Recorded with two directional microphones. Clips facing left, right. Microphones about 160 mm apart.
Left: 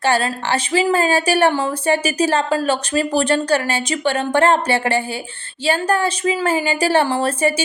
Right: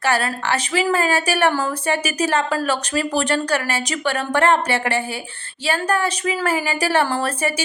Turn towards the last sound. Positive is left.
turn(degrees=25)  # may be behind; listen again after turning